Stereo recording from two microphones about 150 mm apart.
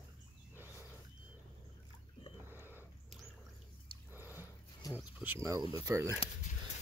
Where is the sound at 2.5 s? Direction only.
15° right (ahead or behind).